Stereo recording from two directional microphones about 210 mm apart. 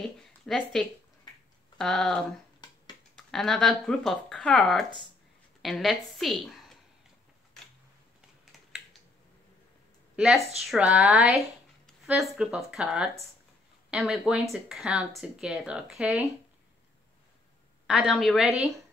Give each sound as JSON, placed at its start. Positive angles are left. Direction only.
{"t": 0.0, "sound": "a sound", "side_deg": 0}
{"t": 1.8, "sound": "speech", "side_deg": 5}
{"t": 2.6, "sound": "finger snapping", "side_deg": 20}
{"t": 3.2, "sound": "a woman's voice", "side_deg": 0}
{"t": 10.1, "sound": "a woman's voice", "side_deg": -5}
{"t": 17.8, "sound": "speech", "side_deg": 0}